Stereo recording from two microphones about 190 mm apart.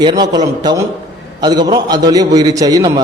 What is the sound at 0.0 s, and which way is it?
A man's voice, 20° right (ahead or behind).